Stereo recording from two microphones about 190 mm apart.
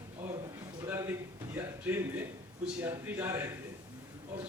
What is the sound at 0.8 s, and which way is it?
A man's voice, 15° right (ahead or behind).